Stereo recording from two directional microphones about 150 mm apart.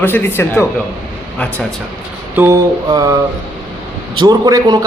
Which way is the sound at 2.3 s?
15° right (ahead or behind).